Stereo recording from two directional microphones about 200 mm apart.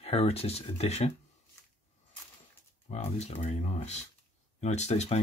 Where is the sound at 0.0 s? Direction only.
30° left (ahead or behind).